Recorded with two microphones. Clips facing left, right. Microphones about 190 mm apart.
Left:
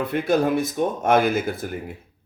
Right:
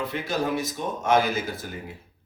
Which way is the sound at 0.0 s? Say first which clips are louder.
Left 7 dB; 55° left (ahead or behind).